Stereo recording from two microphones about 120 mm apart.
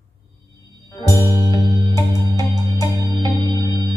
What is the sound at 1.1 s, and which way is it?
Music, 30° right (ahead or behind).